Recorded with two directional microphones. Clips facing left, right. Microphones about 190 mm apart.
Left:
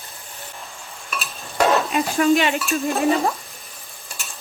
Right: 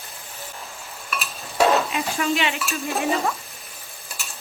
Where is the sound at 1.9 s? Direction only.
50° left (ahead or behind).